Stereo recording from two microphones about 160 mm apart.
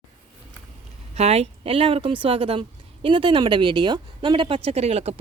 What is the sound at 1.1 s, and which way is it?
Speech, 40° right (ahead or behind).